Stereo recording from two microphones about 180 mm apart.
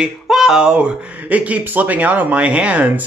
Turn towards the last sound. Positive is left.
turn(degrees=-10)  # may be behind; listen again after turning